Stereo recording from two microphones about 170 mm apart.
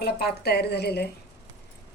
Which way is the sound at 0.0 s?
70° left (ahead or behind).